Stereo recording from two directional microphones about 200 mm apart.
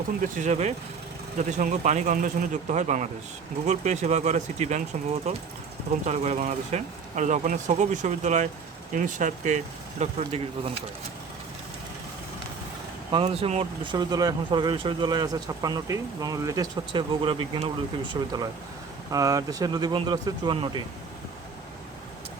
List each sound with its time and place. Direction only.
0.2 s speech: 40° right (ahead or behind)
13.1 s speech: 25° right (ahead or behind)